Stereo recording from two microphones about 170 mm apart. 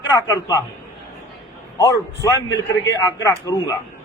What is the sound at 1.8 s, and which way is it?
A man's voice, 20° left (ahead or behind).